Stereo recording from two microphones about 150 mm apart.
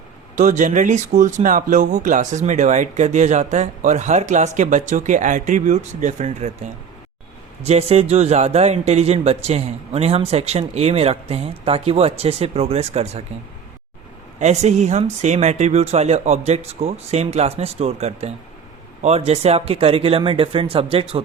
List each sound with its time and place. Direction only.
0.3 s speech: 55° right (ahead or behind)
7.6 s speech: 45° right (ahead or behind)
14.3 s speech: 50° right (ahead or behind)